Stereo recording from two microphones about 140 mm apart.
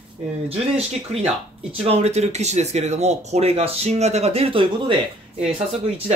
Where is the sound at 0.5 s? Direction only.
45° right (ahead or behind).